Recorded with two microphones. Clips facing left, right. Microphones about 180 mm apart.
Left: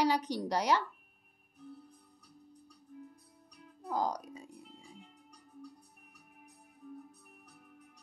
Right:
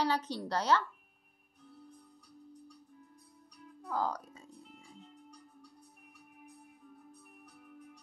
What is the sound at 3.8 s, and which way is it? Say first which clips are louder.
Speech: left 1 dB; 15° left (ahead or behind).